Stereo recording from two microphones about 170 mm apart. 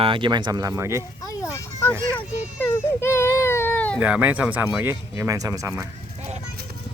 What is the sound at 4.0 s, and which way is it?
Speech, 10° right (ahead or behind).